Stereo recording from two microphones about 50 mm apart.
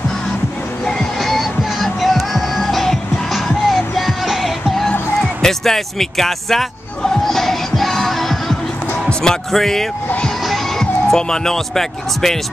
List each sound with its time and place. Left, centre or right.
0.8 s music: centre
5.2 s music: centre
11.1 s speech: centre